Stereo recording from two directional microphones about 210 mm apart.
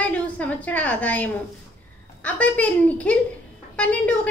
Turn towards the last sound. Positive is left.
turn(degrees=5)  # may be behind; listen again after turning